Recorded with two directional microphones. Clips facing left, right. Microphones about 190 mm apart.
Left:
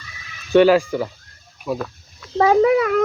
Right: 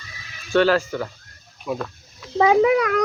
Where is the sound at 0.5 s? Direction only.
15° left (ahead or behind).